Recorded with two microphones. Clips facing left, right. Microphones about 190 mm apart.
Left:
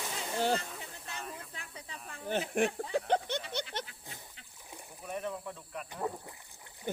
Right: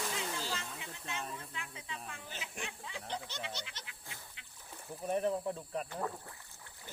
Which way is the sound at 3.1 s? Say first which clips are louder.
Left 10 dB; 60° left (ahead or behind).